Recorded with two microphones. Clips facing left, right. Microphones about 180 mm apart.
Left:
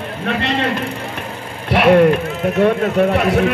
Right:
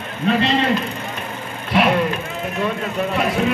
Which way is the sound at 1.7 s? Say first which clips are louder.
Left 7 dB; 60° left (ahead or behind).